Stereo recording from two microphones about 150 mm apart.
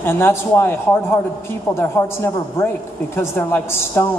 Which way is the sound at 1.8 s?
20° left (ahead or behind).